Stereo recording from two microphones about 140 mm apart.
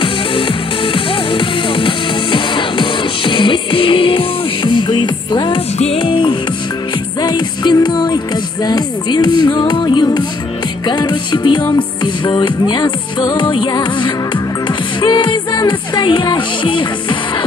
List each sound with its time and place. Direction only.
0.9 s music: 40° left (ahead or behind)